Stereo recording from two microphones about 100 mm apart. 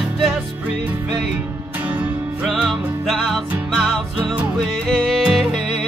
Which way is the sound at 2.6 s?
Centre (ahead or behind).